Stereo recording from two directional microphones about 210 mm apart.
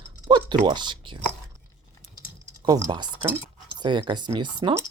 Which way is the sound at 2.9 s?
20° right (ahead or behind).